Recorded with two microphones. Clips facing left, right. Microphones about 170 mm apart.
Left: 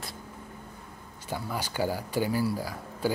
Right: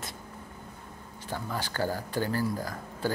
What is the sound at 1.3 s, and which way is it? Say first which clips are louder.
Speech: left 1 dB; 10° left (ahead or behind).